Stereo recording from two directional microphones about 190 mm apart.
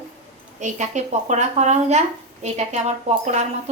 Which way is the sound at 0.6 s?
40° right (ahead or behind).